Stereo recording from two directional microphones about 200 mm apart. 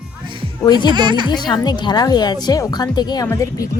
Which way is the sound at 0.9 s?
20° right (ahead or behind).